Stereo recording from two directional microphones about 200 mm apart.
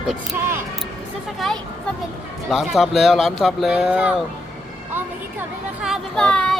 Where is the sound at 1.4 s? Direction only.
Centre (ahead or behind).